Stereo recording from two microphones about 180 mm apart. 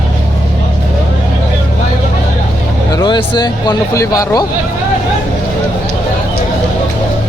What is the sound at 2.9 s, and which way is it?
Speech, 25° left (ahead or behind).